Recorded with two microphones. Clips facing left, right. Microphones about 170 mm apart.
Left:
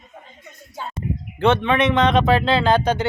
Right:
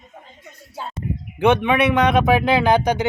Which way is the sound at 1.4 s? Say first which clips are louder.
Right 1 dB; 15° right (ahead or behind).